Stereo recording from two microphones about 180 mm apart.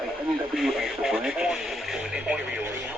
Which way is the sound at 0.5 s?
Centre (ahead or behind).